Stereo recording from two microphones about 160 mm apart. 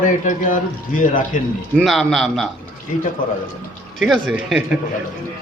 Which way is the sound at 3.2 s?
60° left (ahead or behind).